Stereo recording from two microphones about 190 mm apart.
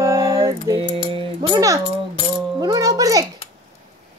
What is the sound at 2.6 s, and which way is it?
Music, 20° right (ahead or behind).